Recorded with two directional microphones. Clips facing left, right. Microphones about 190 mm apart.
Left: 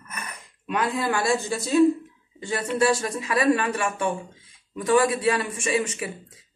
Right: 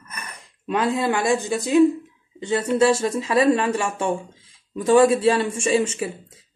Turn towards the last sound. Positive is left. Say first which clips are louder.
# right 5 dB
turn(degrees=-30)  # may be behind; listen again after turning